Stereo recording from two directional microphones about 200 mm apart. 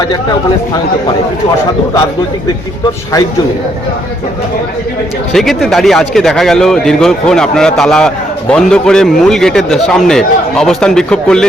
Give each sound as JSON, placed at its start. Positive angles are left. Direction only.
{"t": 5.3, "sound": "speech", "side_deg": 0}